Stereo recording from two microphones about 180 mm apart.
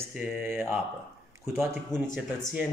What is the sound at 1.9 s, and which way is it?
Speech, 20° left (ahead or behind).